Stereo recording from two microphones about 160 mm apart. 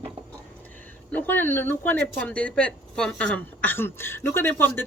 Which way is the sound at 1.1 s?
10° left (ahead or behind).